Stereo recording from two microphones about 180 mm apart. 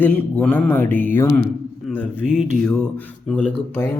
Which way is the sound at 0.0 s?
10° left (ahead or behind).